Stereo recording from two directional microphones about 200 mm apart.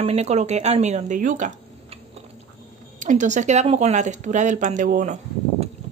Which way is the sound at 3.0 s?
40° right (ahead or behind).